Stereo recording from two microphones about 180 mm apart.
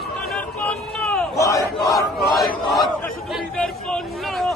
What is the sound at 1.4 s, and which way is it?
Battle cry, 20° left (ahead or behind).